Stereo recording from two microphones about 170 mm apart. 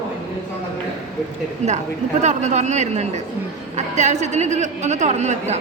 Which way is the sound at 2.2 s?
45° right (ahead or behind).